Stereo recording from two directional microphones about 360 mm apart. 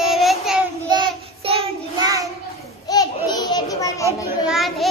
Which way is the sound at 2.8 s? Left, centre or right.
Centre.